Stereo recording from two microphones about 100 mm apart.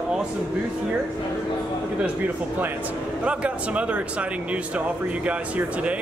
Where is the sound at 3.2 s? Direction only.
10° right (ahead or behind).